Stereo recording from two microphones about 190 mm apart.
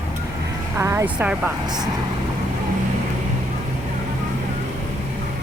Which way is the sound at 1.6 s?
20° right (ahead or behind).